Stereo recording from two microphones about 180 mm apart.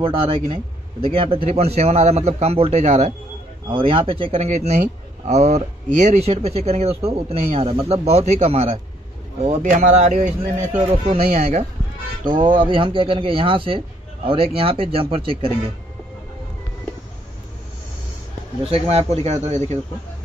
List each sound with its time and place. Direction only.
0.0 s a man's voice: 30° right (ahead or behind)
3.6 s a man's voice: 30° right (ahead or behind)
12.3 s a man's voice: 25° right (ahead or behind)
18.7 s a man's voice: 35° right (ahead or behind)